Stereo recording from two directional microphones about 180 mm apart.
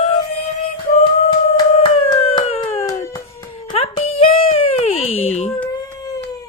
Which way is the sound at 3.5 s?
35° left (ahead or behind).